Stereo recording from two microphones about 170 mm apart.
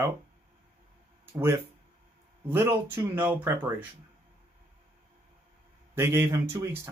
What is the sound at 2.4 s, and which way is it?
Speech, 10° right (ahead or behind).